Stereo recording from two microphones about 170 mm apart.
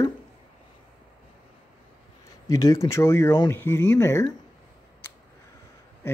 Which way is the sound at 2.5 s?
20° left (ahead or behind).